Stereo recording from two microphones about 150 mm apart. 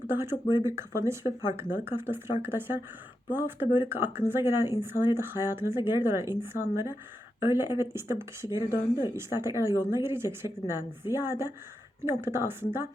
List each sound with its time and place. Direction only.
0.1 s speech: 15° right (ahead or behind)